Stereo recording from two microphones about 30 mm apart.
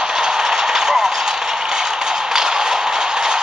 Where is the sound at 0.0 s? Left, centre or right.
Right.